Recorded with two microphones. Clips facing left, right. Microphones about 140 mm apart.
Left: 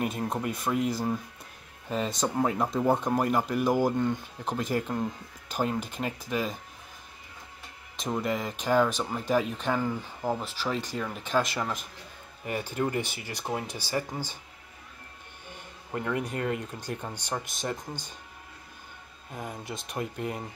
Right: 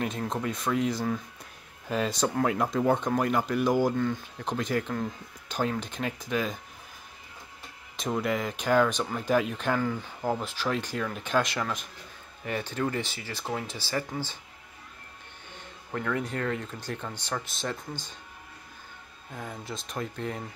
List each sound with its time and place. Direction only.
0.0 s speech: 10° left (ahead or behind)
7.9 s speech: centre (ahead or behind)
15.9 s speech: 15° left (ahead or behind)
19.3 s speech: 15° left (ahead or behind)